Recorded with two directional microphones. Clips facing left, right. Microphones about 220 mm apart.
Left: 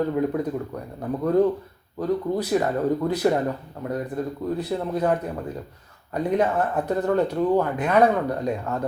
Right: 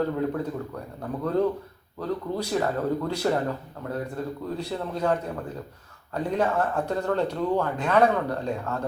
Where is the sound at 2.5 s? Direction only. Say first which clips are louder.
Left 3 dB; 15° left (ahead or behind).